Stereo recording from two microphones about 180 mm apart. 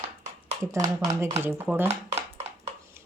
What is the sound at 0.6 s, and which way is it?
Speech, 15° right (ahead or behind).